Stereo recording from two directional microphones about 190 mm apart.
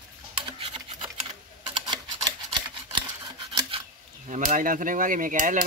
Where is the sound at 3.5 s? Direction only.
30° right (ahead or behind).